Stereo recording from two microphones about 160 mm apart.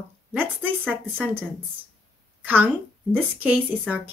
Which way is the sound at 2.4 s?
10° right (ahead or behind).